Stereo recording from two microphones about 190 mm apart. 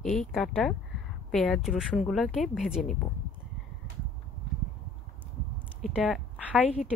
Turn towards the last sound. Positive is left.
turn(degrees=35)  # may be behind; listen again after turning